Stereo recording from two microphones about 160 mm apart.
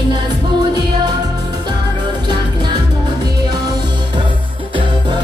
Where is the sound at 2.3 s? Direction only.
30° right (ahead or behind).